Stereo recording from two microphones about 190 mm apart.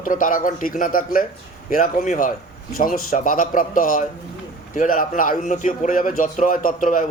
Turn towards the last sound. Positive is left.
turn(degrees=45)  # may be behind; listen again after turning